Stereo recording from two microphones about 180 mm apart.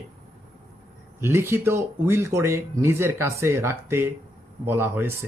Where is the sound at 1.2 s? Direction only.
15° right (ahead or behind).